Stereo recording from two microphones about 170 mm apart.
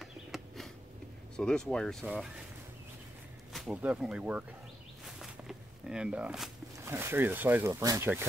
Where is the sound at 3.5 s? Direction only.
5° right (ahead or behind).